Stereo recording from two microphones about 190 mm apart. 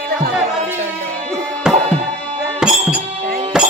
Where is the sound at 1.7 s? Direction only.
5° right (ahead or behind).